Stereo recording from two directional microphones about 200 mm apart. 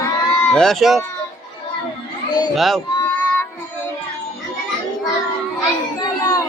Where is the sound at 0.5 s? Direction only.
Centre (ahead or behind).